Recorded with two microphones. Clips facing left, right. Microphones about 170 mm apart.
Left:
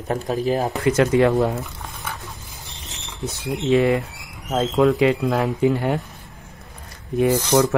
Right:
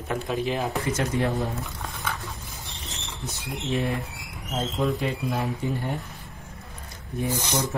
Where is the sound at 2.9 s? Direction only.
65° left (ahead or behind).